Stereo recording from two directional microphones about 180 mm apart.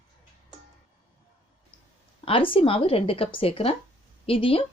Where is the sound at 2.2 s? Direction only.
30° left (ahead or behind).